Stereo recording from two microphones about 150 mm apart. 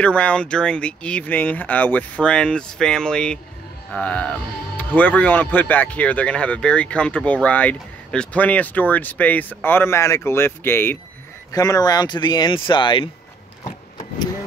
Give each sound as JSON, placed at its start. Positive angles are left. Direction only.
{"t": 0.0, "sound": "speech", "side_deg": 10}